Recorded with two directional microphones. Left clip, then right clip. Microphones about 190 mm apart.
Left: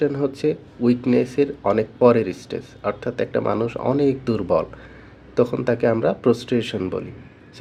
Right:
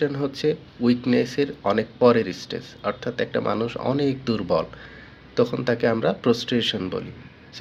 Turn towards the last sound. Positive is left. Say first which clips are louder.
# left 1 dB
turn(degrees=15)  # may be behind; listen again after turning